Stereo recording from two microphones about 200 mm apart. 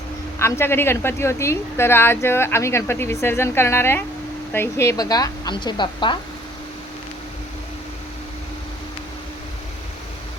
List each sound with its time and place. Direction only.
0.3 s a woman's voice: 10° left (ahead or behind)